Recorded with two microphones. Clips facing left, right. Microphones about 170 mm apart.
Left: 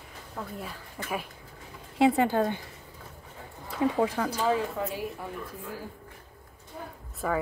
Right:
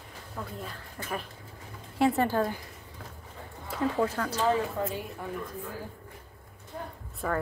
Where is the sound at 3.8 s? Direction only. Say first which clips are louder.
Left 2 dB; 15° left (ahead or behind).